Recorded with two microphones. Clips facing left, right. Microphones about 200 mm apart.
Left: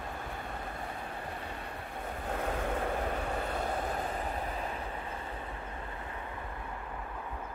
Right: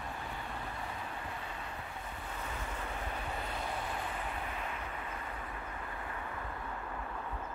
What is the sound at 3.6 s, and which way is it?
Waves, 45° left (ahead or behind).